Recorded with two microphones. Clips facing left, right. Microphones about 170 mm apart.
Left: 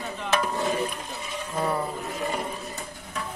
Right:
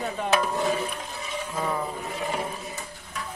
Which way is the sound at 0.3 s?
Centre (ahead or behind).